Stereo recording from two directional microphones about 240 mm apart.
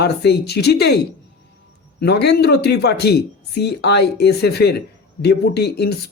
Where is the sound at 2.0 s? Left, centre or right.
Left.